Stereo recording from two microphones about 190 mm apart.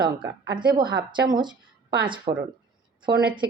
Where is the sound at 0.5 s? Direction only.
25° right (ahead or behind).